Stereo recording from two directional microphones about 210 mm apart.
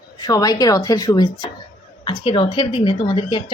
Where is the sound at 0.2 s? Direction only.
15° left (ahead or behind).